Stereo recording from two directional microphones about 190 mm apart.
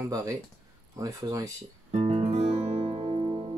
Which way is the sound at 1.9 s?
35° right (ahead or behind).